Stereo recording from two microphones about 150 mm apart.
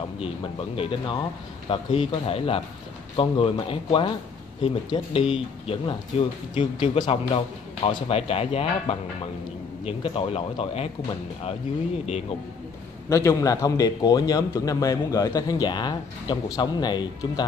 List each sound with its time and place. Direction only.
0.2 s speech: 40° left (ahead or behind)
13.1 s a man's voice: 20° left (ahead or behind)